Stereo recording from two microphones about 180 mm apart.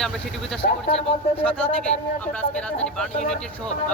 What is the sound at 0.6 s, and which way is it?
Speech, 55° left (ahead or behind).